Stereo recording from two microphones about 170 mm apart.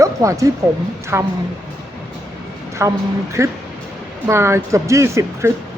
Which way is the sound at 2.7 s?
15° right (ahead or behind).